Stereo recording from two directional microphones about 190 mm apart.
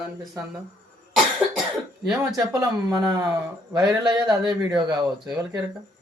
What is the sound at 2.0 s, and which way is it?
Speech, 5° right (ahead or behind).